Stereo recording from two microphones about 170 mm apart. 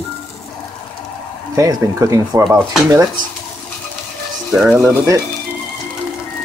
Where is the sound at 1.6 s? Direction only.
20° right (ahead or behind).